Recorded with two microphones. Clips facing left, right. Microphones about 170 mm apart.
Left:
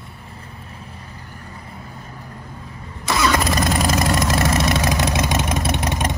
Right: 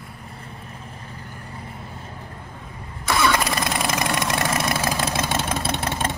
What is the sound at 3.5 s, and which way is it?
Vehicle, 40° left (ahead or behind).